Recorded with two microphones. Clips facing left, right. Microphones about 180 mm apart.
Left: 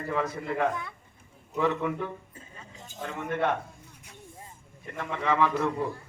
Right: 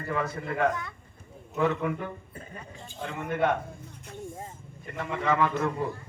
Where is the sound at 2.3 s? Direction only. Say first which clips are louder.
Right 6 dB; 60° right (ahead or behind).